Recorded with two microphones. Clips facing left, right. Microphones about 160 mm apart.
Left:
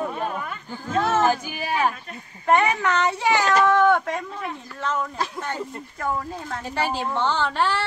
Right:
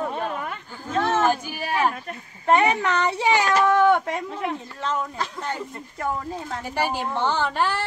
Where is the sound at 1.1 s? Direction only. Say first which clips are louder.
Even; 10° left (ahead or behind).